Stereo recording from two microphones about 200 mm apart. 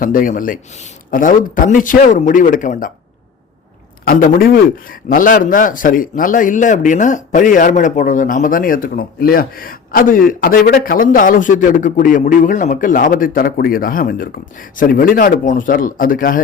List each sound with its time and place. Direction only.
0.0 s a man's voice: 45° left (ahead or behind)
4.0 s a man's voice: 45° left (ahead or behind)